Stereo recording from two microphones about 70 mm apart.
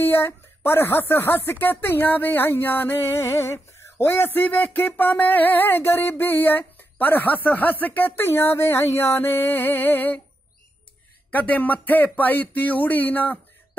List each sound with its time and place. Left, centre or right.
0.0 s speech: left
11.3 s speech: left